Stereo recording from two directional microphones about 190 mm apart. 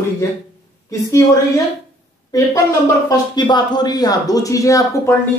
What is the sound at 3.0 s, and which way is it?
Speech, 20° left (ahead or behind).